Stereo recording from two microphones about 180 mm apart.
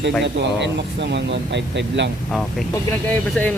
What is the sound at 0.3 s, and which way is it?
Speech, 75° right (ahead or behind).